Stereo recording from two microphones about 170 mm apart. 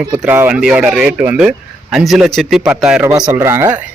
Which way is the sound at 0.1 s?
10° right (ahead or behind).